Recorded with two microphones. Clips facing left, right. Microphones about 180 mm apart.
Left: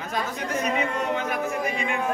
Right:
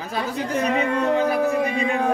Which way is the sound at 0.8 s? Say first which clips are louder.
Right 6 dB; 35° right (ahead or behind).